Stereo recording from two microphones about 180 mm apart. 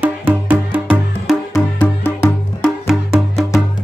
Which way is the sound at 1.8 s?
10° left (ahead or behind).